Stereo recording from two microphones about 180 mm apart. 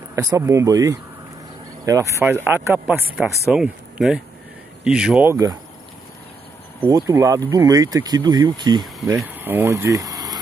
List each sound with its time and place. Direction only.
0.1 s speech: 20° right (ahead or behind)
7.1 s speech: 15° right (ahead or behind)
9.3 s speech: 10° right (ahead or behind)